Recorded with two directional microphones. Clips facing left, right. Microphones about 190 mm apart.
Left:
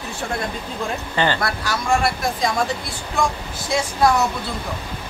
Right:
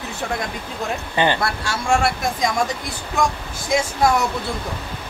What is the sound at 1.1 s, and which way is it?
Speech, 20° right (ahead or behind).